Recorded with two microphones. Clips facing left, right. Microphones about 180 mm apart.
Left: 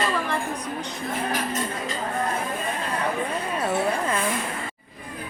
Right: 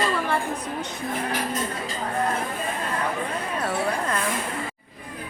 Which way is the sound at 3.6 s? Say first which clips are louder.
Left 2 dB; 5° left (ahead or behind).